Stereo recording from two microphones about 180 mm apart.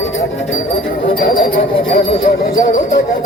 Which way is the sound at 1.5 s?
55° left (ahead or behind).